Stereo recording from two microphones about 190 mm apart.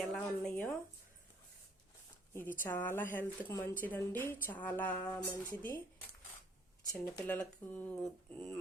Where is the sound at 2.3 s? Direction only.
10° left (ahead or behind).